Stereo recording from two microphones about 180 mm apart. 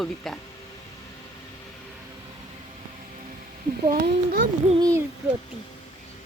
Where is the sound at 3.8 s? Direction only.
50° right (ahead or behind).